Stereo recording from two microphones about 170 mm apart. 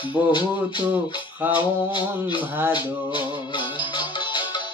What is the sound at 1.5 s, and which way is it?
Music, 30° left (ahead or behind).